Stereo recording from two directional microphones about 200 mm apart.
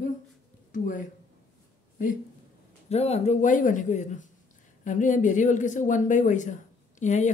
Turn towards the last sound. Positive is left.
turn(degrees=35)  # may be behind; listen again after turning